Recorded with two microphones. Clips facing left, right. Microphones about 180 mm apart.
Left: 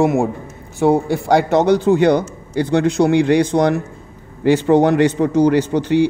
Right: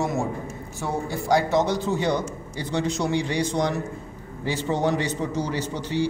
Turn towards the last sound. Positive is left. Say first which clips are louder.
# left 11 dB
turn(degrees=65)  # may be behind; listen again after turning